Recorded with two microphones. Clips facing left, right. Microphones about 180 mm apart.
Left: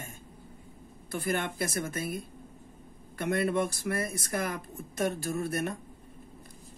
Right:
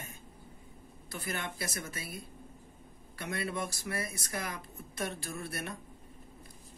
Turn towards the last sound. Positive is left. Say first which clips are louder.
# left 8 dB
turn(degrees=45)  # may be behind; listen again after turning